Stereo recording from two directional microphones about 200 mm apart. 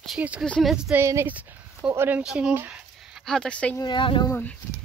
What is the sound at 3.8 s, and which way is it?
Speech, 25° left (ahead or behind).